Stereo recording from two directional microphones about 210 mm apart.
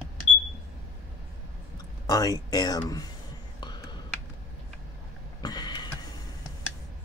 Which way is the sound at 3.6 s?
20° left (ahead or behind).